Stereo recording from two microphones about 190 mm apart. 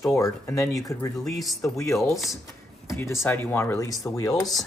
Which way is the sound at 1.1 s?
Centre (ahead or behind).